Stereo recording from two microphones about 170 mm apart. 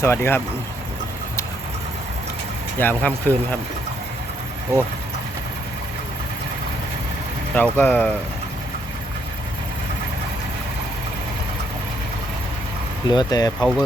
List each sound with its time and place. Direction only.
0.0 s speech: 15° left (ahead or behind)
2.7 s speech: 10° left (ahead or behind)
7.5 s speech: 10° left (ahead or behind)
13.1 s speech: 25° left (ahead or behind)
13.6 s speech: centre (ahead or behind)